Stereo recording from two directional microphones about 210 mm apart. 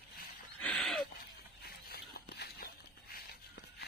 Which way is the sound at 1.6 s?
50° left (ahead or behind).